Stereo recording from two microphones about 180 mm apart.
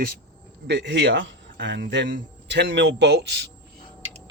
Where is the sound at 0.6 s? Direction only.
70° right (ahead or behind).